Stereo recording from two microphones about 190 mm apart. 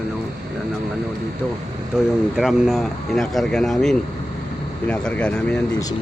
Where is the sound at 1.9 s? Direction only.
5° right (ahead or behind).